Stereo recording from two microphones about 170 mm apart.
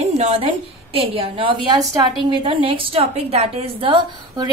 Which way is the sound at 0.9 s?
30° right (ahead or behind).